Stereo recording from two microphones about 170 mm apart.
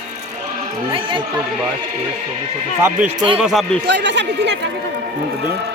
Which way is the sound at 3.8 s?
90° right.